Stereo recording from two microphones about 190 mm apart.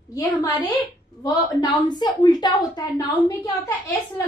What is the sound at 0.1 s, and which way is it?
A woman's voice, 15° left (ahead or behind).